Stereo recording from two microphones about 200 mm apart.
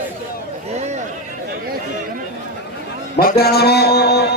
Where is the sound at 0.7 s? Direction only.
35° right (ahead or behind).